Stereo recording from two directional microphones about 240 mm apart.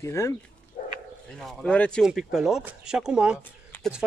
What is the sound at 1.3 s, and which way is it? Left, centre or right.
Speech, centre.